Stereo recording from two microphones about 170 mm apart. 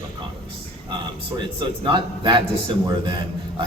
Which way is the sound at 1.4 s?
25° right (ahead or behind).